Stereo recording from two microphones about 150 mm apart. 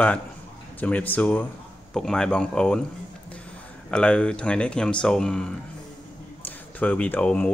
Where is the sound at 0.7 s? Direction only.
10° left (ahead or behind).